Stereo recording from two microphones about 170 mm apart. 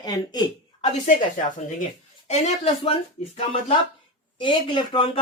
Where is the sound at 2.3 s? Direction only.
40° left (ahead or behind).